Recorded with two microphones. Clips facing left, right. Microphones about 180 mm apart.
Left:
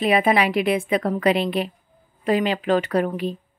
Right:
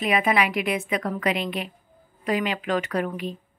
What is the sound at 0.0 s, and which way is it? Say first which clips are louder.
A woman's voice: left 4 dB; 30° left (ahead or behind).